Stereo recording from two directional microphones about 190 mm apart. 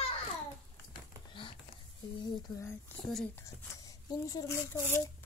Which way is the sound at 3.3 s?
15° left (ahead or behind).